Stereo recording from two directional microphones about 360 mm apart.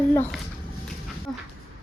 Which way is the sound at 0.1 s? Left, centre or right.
Centre.